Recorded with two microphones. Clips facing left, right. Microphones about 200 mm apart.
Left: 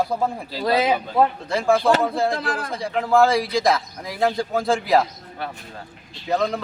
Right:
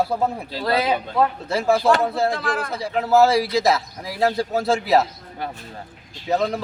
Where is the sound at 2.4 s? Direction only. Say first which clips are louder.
Right 2 dB; 40° left (ahead or behind).